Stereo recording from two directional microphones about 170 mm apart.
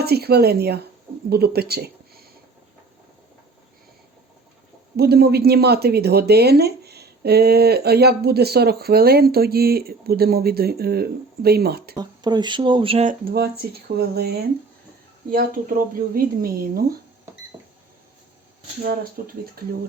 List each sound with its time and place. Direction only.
0.0 s speech: 70° right (ahead or behind)
4.9 s speech: 70° right (ahead or behind)
11.9 s speech: 25° right (ahead or behind)
13.1 s speech: 65° right (ahead or behind)
15.3 s speech: 55° right (ahead or behind)
18.8 s speech: 60° right (ahead or behind)